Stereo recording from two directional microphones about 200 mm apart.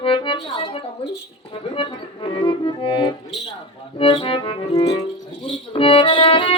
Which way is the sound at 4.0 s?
25° left (ahead or behind).